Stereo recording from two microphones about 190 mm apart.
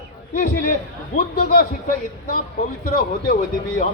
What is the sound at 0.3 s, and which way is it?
Speech, 45° left (ahead or behind).